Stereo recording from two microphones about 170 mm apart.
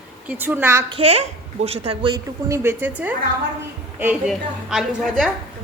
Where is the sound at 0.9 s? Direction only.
35° right (ahead or behind).